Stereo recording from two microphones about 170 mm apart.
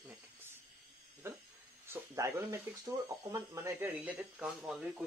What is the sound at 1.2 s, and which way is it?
Speech, 15° right (ahead or behind).